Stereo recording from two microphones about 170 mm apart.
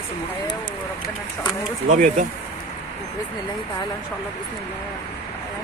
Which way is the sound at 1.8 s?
45° right (ahead or behind).